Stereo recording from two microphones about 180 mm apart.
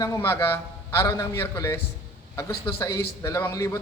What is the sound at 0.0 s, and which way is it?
A man's voice, 15° left (ahead or behind).